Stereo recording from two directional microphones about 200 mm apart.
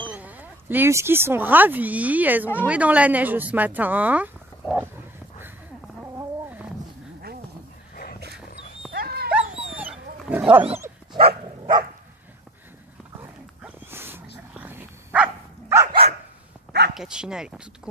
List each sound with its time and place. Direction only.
0.1 s speech: 10° right (ahead or behind)
6.1 s cat: 5° right (ahead or behind)
7.9 s dog: 45° left (ahead or behind)
8.9 s dog: 50° right (ahead or behind)
10.3 s speech: 10° right (ahead or behind)
11.1 s dog: 25° right (ahead or behind)
13.6 s dog: 10° right (ahead or behind)
16.9 s speech: 5° right (ahead or behind)